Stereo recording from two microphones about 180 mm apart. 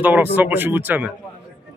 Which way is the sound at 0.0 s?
10° right (ahead or behind).